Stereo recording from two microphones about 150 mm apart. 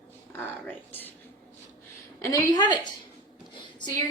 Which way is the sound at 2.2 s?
25° left (ahead or behind).